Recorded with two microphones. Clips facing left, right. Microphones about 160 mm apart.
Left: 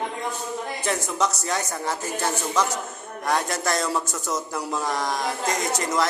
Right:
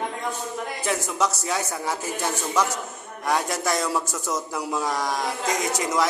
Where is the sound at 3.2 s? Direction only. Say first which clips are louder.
Even; 10° right (ahead or behind).